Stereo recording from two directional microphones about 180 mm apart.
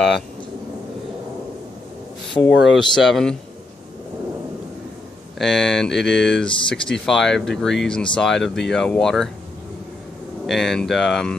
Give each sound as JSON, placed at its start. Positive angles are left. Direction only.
{"t": 2.5, "sound": "speech", "side_deg": 80}
{"t": 3.0, "sound": "speech", "side_deg": 0}
{"t": 5.4, "sound": "speech", "side_deg": 0}
{"t": 10.4, "sound": "speech", "side_deg": 0}